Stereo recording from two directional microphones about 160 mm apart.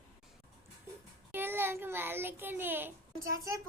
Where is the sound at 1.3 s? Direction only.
15° right (ahead or behind).